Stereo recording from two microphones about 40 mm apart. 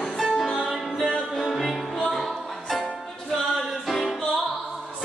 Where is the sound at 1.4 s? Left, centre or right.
Centre.